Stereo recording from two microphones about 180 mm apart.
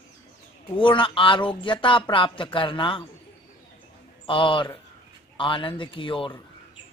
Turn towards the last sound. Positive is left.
turn(degrees=30)  # may be behind; listen again after turning